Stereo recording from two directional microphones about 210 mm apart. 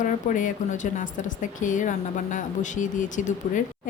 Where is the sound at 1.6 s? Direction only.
35° left (ahead or behind).